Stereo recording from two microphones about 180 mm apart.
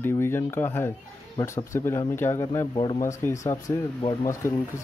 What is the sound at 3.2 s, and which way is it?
Speech, 15° left (ahead or behind).